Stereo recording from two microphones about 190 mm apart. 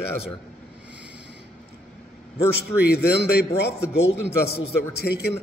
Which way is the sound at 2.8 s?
60° left (ahead or behind).